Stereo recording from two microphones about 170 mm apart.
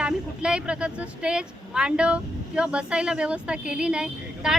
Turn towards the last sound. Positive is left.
turn(degrees=-5)  # may be behind; listen again after turning